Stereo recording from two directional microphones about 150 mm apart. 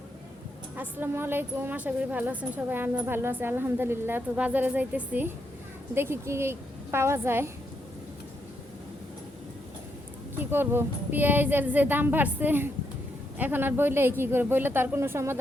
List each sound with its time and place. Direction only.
0.8 s a woman's voice: 15° right (ahead or behind)
10.3 s a woman's voice: 15° right (ahead or behind)